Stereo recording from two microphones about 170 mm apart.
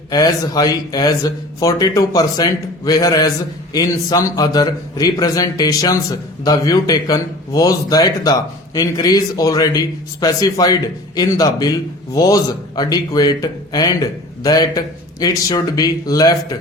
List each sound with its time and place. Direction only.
0.1 s speech: 20° left (ahead or behind)